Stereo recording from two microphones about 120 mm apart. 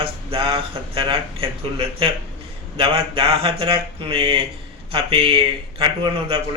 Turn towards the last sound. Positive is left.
turn(degrees=-50)  # may be behind; listen again after turning